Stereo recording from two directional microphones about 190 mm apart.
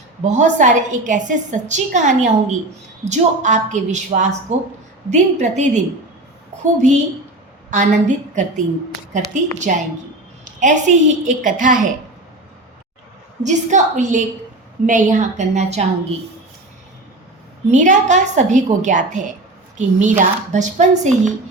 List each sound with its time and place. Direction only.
0.3 s a woman's voice: 40° right (ahead or behind)
7.7 s a woman's voice: 40° right (ahead or behind)
13.4 s a woman's voice: 40° right (ahead or behind)
17.7 s a woman's voice: 40° right (ahead or behind)